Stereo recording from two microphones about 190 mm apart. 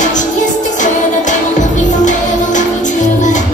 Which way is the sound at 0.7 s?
40° left (ahead or behind).